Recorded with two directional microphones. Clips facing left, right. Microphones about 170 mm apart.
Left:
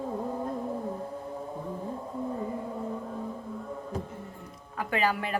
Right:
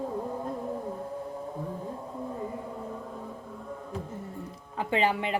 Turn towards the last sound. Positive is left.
turn(degrees=-20)  # may be behind; listen again after turning